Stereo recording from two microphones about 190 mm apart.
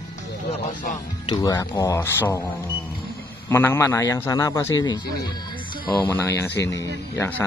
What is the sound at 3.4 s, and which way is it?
A man's voice, 15° left (ahead or behind).